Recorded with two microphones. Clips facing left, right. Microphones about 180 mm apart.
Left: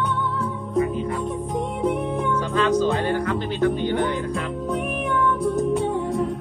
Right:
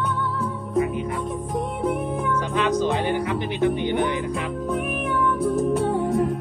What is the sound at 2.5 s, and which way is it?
Music, 15° right (ahead or behind).